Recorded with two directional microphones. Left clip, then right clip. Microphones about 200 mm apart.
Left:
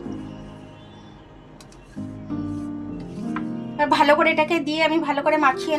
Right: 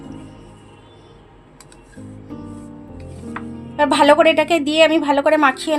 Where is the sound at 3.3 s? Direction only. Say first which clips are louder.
Left 1 dB; 50° right (ahead or behind).